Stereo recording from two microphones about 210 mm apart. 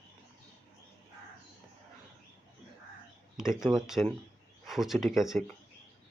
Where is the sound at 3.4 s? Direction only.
Centre (ahead or behind).